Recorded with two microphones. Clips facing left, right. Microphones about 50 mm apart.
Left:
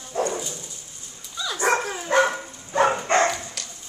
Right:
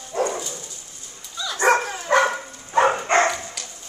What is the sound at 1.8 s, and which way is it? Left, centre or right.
Dog, centre.